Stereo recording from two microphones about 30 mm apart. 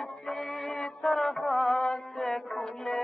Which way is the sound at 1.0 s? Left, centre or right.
Centre.